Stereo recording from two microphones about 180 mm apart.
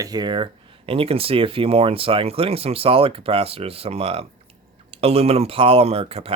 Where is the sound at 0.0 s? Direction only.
20° right (ahead or behind).